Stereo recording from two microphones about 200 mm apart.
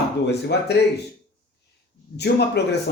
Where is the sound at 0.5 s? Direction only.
60° left (ahead or behind).